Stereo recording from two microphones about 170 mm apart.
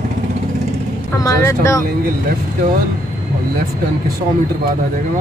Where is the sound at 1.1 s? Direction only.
20° left (ahead or behind).